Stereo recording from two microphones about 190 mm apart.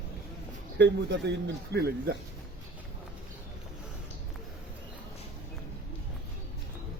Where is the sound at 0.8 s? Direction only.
65° right (ahead or behind).